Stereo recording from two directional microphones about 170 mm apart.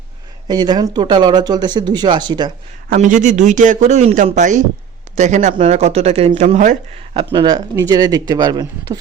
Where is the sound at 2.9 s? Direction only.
50° right (ahead or behind).